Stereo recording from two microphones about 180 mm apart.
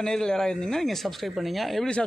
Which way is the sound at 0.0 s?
5° left (ahead or behind).